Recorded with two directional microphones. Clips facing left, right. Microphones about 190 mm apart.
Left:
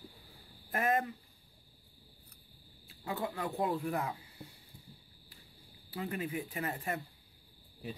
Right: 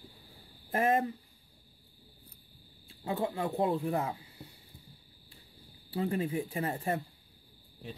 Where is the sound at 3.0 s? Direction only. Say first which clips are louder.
Right 4 dB; 25° right (ahead or behind).